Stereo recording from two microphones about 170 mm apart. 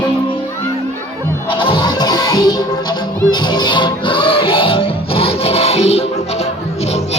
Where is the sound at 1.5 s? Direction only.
30° left (ahead or behind).